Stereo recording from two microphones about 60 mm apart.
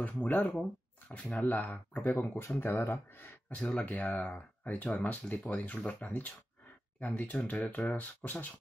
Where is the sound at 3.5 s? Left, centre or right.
Left.